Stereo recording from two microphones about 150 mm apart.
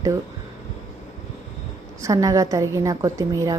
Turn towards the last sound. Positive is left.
turn(degrees=-20)  # may be behind; listen again after turning